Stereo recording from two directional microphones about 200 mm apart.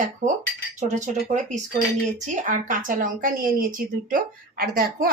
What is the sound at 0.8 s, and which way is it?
Speech, 35° right (ahead or behind).